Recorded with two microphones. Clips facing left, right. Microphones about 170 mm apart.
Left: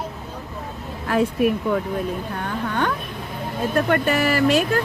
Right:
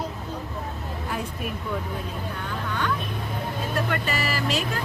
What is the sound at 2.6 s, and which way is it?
Vehicle, 55° left (ahead or behind).